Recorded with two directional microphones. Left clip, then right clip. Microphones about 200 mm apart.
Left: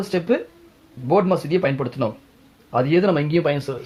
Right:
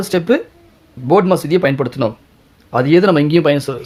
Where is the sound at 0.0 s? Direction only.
45° right (ahead or behind).